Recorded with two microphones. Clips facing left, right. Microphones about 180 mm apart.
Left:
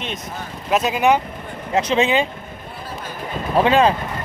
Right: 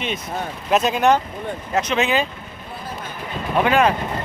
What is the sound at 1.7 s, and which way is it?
Speech, 30° left (ahead or behind).